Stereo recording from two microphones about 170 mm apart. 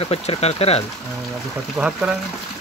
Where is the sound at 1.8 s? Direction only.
5° right (ahead or behind).